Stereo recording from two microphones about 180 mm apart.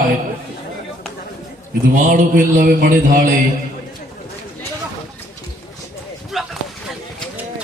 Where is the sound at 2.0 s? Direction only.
45° right (ahead or behind).